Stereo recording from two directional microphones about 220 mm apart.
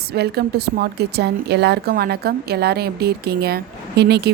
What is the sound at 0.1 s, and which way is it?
A woman's voice, 45° right (ahead or behind).